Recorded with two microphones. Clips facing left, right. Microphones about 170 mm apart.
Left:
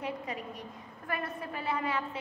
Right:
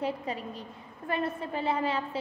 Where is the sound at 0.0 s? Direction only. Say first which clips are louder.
Right 4 dB; 30° right (ahead or behind).